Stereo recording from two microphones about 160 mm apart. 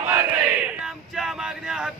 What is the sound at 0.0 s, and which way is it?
Battle cry, 15° right (ahead or behind).